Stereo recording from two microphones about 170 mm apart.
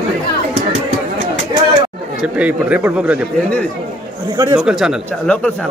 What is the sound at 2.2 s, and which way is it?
Speech, 5° right (ahead or behind).